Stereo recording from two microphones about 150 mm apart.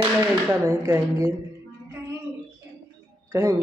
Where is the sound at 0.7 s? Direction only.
20° right (ahead or behind).